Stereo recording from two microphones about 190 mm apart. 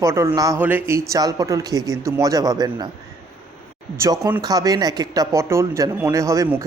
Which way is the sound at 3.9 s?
15° right (ahead or behind).